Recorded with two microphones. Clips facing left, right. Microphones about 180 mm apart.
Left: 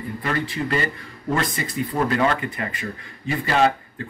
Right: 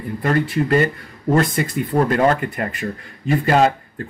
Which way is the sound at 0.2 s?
45° right (ahead or behind).